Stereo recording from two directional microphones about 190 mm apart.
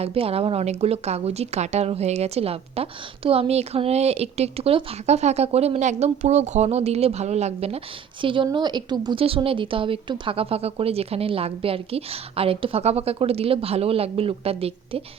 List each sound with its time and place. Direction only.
0.0 s a woman's voice: 30° right (ahead or behind)